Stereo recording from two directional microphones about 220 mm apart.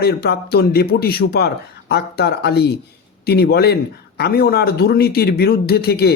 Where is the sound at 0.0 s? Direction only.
45° left (ahead or behind).